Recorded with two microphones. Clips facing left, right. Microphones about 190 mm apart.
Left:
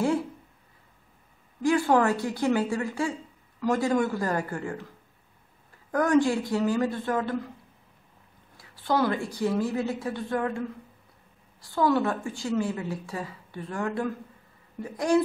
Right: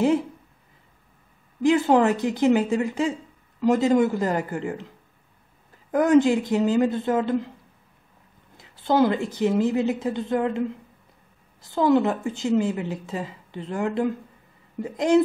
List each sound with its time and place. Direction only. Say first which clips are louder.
1.6 s a woman's voice: right 4 dB; 20° right (ahead or behind)
5.9 s a woman's voice: right 5 dB; 20° right (ahead or behind)
8.5 s a woman's voice: right 5 dB; 20° right (ahead or behind)